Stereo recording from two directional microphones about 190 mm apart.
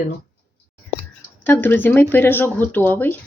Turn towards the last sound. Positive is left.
turn(degrees=10)  # may be behind; listen again after turning